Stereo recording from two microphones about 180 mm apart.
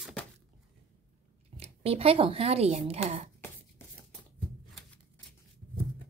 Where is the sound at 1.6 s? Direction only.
35° right (ahead or behind).